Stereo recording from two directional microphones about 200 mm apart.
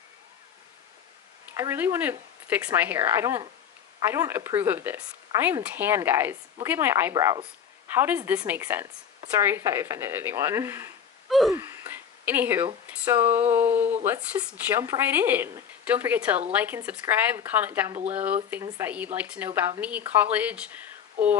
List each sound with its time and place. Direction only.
1.6 s speech: 10° right (ahead or behind)
11.2 s wheeze: centre (ahead or behind)
11.5 s a sound: 10° right (ahead or behind)
12.8 s speech: 10° right (ahead or behind)